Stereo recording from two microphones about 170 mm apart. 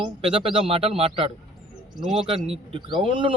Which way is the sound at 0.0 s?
30° right (ahead or behind).